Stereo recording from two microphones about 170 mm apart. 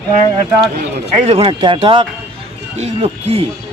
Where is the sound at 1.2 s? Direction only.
35° right (ahead or behind).